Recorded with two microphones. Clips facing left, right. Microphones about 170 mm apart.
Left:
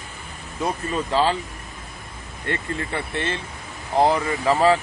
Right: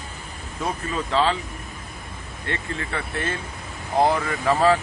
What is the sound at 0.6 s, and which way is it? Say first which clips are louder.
Speech: left 2 dB; 10° left (ahead or behind).